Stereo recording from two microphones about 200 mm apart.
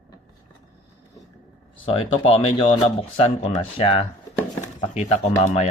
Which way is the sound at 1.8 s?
30° left (ahead or behind).